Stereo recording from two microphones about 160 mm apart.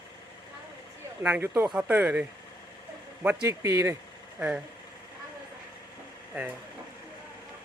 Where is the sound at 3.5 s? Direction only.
20° right (ahead or behind).